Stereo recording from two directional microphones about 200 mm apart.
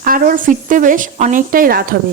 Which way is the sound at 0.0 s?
45° right (ahead or behind).